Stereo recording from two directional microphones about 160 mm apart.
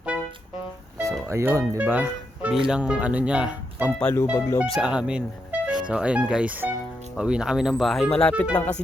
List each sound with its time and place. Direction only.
1.3 s speech: 15° right (ahead or behind)
4.0 s speech: 15° left (ahead or behind)
4.6 s speech: centre (ahead or behind)